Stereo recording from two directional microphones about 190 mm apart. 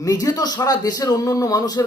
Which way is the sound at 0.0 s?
15° left (ahead or behind).